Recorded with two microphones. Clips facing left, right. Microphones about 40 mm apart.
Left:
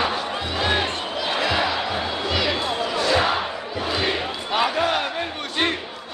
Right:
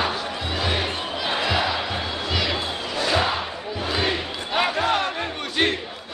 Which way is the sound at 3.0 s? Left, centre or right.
Centre.